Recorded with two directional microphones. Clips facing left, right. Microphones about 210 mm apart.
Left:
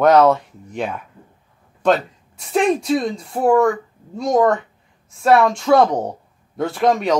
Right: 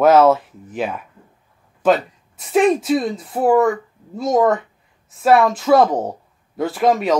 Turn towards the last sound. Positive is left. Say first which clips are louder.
# right 1 dB
turn(degrees=-5)  # may be behind; listen again after turning